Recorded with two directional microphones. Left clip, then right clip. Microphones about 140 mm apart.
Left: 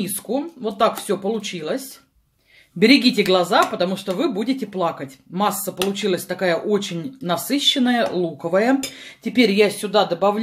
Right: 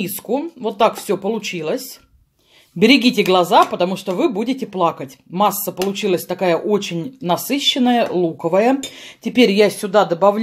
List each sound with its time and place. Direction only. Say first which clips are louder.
0.0 s speech: right 3 dB; 40° right (ahead or behind)